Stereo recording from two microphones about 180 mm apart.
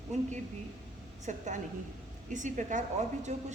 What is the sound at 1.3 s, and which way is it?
A woman's voice, 40° right (ahead or behind).